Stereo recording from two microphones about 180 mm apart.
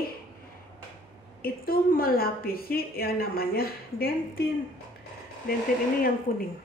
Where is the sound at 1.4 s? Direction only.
55° left (ahead or behind).